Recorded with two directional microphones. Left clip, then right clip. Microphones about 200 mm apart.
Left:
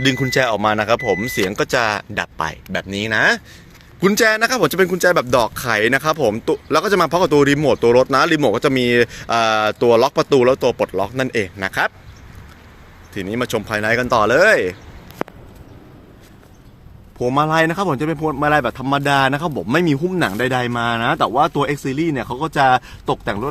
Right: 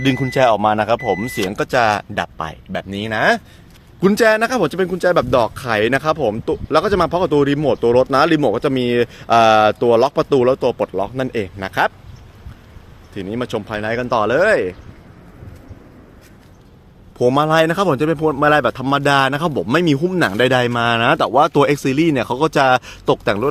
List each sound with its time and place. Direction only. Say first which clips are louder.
0.0 s speech: right 2 dB; 5° right (ahead or behind)
13.1 s speech: left 2 dB; centre (ahead or behind)
17.2 s speech: right 2 dB; 20° right (ahead or behind)